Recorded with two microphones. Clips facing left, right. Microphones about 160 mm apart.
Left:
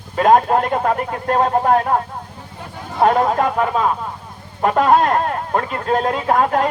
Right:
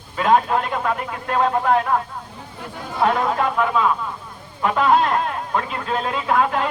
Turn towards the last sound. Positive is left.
turn(degrees=45)  # may be behind; listen again after turning